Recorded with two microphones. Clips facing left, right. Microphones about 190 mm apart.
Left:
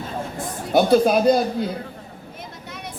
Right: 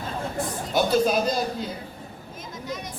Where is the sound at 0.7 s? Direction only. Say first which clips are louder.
Left 6 dB; 60° left (ahead or behind).